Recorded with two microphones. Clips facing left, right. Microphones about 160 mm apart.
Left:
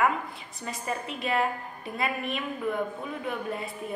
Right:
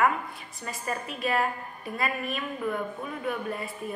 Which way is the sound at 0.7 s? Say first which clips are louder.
Left 1 dB; 20° left (ahead or behind).